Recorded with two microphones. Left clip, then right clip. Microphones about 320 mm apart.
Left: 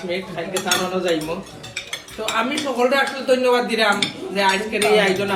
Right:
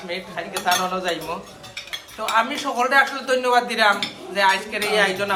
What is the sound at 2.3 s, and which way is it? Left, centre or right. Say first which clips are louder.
Speech: right 1 dB; centre.